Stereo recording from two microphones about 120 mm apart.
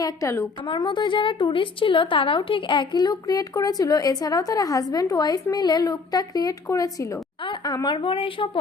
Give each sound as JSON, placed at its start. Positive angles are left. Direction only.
{"t": 0.0, "sound": "a woman's voice", "side_deg": 25}
{"t": 0.7, "sound": "a woman's voice", "side_deg": 40}
{"t": 7.9, "sound": "a woman's voice", "side_deg": 50}